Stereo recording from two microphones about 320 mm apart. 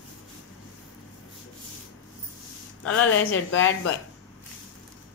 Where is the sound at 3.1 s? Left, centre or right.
Left.